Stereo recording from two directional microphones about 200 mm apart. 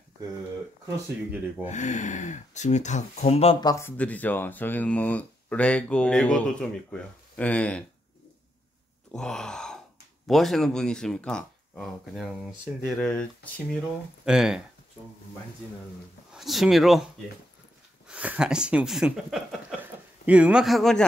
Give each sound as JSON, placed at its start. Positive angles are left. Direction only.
{"t": 0.8, "sound": "speech", "side_deg": -10}
{"t": 1.7, "sound": "speech", "side_deg": 35}
{"t": 3.6, "sound": "speech", "side_deg": 15}
{"t": 9.1, "sound": "speech", "side_deg": 5}
{"t": 16.3, "sound": "speech", "side_deg": 0}